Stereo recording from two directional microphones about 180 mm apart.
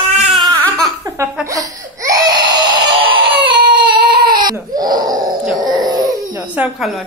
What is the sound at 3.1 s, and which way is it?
Baby cry, 25° right (ahead or behind).